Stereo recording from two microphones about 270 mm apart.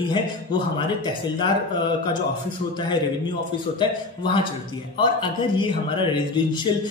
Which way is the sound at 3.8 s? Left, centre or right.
Centre.